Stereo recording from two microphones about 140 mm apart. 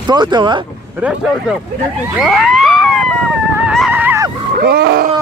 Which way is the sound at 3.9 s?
10° right (ahead or behind).